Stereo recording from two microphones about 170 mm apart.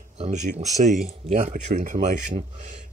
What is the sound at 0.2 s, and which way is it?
Speech, 45° right (ahead or behind).